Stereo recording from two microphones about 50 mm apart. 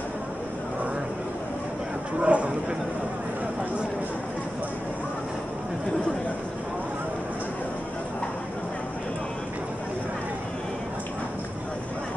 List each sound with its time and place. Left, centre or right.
2.1 s speech: right